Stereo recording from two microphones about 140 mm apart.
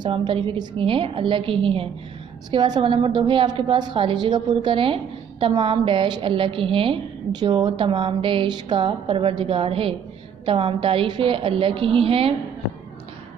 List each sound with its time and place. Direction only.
0.0 s a woman's voice: 35° right (ahead or behind)